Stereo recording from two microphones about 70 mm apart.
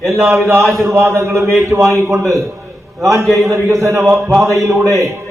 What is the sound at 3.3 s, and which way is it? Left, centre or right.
A man's voice, right.